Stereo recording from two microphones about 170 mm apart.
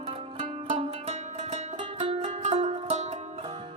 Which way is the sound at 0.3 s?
35° right (ahead or behind).